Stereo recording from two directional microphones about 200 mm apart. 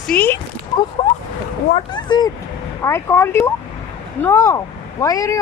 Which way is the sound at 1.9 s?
20° left (ahead or behind).